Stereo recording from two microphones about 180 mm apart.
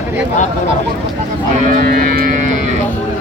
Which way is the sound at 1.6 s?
55° right (ahead or behind).